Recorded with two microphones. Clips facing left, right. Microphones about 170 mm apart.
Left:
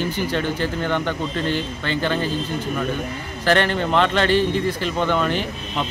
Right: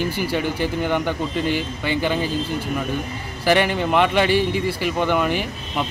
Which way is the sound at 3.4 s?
10° right (ahead or behind).